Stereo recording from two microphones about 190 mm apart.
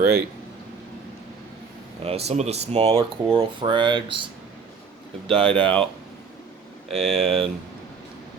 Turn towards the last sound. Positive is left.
turn(degrees=0)  # may be behind; listen again after turning